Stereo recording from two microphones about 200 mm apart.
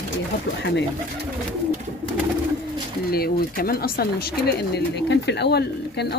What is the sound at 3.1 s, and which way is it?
Speech, 50° left (ahead or behind).